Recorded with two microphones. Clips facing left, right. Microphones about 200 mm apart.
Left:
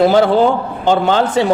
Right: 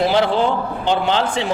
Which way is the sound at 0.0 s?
45° left (ahead or behind).